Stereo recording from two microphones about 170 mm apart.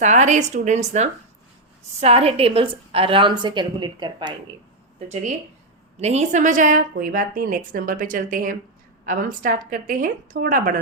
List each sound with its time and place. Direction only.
0.0 s a woman's voice: 45° right (ahead or behind); by 4.4 s 25° right (ahead or behind)
4.9 s a woman's voice: 40° right (ahead or behind); by 10.8 s 55° right (ahead or behind)